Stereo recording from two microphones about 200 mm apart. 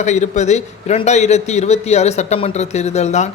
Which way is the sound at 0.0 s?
35° left (ahead or behind).